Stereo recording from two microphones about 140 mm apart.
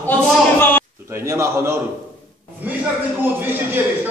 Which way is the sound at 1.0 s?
20° right (ahead or behind).